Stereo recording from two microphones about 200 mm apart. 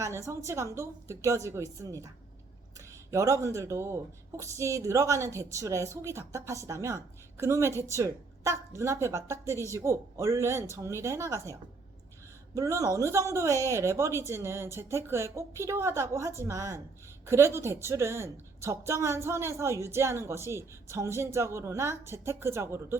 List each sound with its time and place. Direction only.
0.0 s a woman's voice: 15° right (ahead or behind)
3.1 s a woman's voice: 15° right (ahead or behind)
12.5 s a woman's voice: 15° right (ahead or behind)